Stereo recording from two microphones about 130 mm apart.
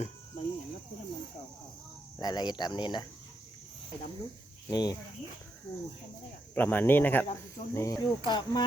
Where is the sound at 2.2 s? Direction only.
30° left (ahead or behind).